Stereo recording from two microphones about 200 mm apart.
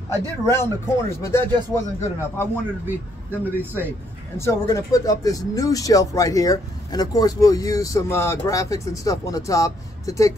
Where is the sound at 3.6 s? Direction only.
10° right (ahead or behind).